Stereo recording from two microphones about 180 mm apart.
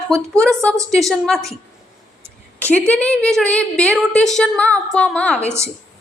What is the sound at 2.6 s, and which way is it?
A woman's voice, 5° left (ahead or behind).